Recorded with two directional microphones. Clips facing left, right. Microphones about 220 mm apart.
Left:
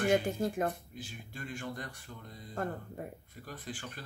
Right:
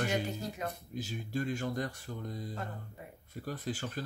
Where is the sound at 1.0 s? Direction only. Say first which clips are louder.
Right 9 dB; 40° right (ahead or behind).